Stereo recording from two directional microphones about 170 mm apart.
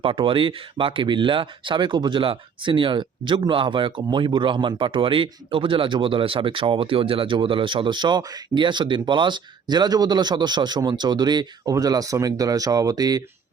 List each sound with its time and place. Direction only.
0.0 s speech: 30° right (ahead or behind)